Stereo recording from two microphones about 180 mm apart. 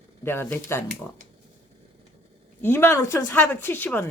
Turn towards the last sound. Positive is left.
turn(degrees=10)  # may be behind; listen again after turning